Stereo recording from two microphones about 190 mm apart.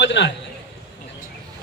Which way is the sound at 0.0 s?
65° left (ahead or behind).